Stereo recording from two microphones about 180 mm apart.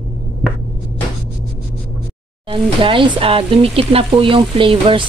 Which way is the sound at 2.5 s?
30° right (ahead or behind).